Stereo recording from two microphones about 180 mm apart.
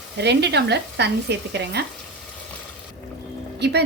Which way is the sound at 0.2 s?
70° right (ahead or behind).